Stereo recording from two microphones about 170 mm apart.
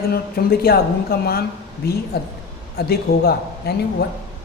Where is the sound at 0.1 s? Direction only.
65° left (ahead or behind).